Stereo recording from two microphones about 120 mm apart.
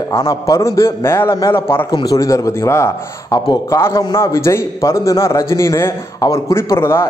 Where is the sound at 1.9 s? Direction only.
30° left (ahead or behind).